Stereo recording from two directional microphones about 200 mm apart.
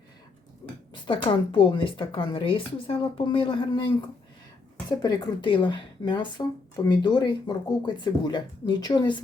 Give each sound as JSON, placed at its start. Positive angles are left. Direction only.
{"t": 1.0, "sound": "speech", "side_deg": 25}